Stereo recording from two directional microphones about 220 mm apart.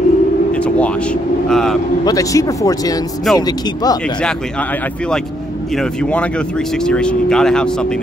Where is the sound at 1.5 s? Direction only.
Centre (ahead or behind).